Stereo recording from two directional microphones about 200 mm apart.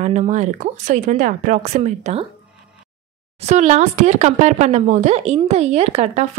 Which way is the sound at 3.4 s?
35° right (ahead or behind).